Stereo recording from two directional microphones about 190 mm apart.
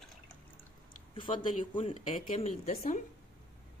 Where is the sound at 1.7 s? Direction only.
30° left (ahead or behind).